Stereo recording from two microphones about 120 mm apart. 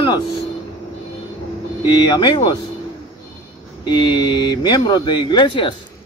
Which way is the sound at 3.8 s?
40° left (ahead or behind).